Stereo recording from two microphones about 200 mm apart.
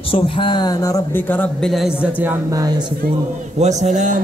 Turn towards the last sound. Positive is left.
turn(degrees=-40)  # may be behind; listen again after turning